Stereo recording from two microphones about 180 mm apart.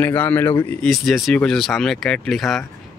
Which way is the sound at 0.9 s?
Centre (ahead or behind).